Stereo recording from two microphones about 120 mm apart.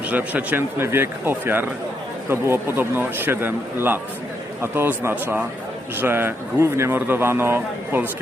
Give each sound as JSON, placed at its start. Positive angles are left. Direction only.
{"t": 0.1, "sound": "a man's voice", "side_deg": -15}